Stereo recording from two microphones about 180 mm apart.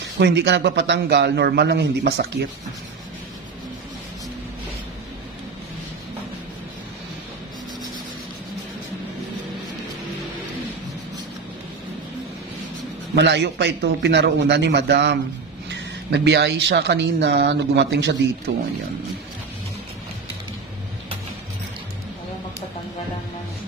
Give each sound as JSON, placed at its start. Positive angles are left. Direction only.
{"t": 0.2, "sound": "speech", "side_deg": -75}
{"t": 13.1, "sound": "speech", "side_deg": -70}